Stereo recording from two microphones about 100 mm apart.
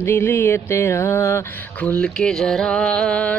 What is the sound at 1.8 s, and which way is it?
Mantra, 10° left (ahead or behind).